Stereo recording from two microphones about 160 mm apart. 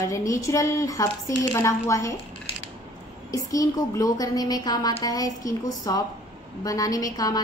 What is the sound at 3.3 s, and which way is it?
Speech, 20° left (ahead or behind).